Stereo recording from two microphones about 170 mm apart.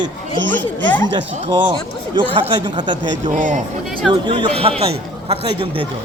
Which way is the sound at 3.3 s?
45° right (ahead or behind).